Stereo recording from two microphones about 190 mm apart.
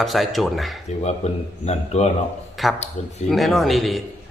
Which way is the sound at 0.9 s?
35° left (ahead or behind).